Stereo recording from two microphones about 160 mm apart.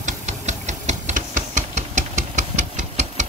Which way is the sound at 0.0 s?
45° right (ahead or behind).